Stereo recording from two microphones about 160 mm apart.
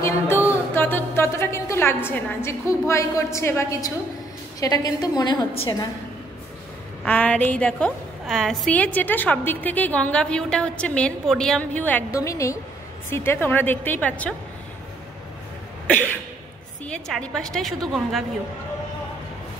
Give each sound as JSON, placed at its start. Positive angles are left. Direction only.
{"t": 0.0, "sound": "a sound", "side_deg": 15}
{"t": 4.6, "sound": "a woman's voice", "side_deg": 25}
{"t": 7.1, "sound": "a woman's voice", "side_deg": 10}
{"t": 15.9, "sound": "a woman's voice", "side_deg": 10}